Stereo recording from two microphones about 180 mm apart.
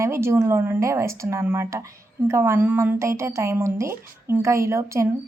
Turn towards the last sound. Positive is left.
turn(degrees=-15)  # may be behind; listen again after turning